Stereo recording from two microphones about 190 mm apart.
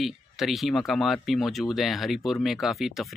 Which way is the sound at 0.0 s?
Centre (ahead or behind).